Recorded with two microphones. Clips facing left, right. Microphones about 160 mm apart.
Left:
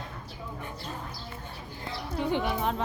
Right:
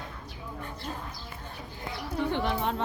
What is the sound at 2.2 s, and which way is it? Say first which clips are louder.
Speech: even; 10° left (ahead or behind).